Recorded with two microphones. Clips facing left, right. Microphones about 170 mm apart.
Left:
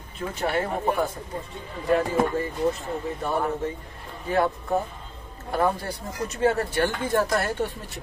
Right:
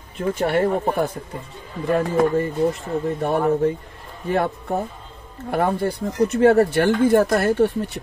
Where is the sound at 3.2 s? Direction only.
60° right (ahead or behind).